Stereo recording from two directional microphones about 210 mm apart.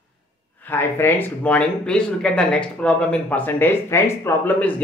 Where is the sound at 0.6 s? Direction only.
10° left (ahead or behind).